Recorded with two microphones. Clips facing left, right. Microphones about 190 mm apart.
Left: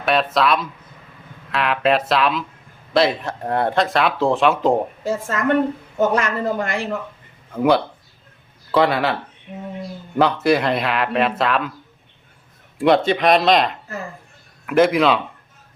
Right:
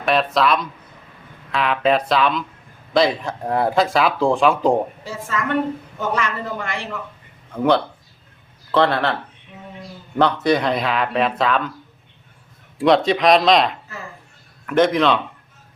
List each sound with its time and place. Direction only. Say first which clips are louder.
0.0 s speech: even; centre (ahead or behind)
5.3 s a woman's voice: left 2 dB; 50° left (ahead or behind)
7.5 s speech: left 1 dB; 10° left (ahead or behind)
10.2 s speech: left 1 dB; 5° left (ahead or behind)
12.8 s speech: even; 5° left (ahead or behind)